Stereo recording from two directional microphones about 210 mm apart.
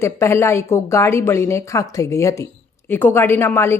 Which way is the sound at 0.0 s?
10° left (ahead or behind).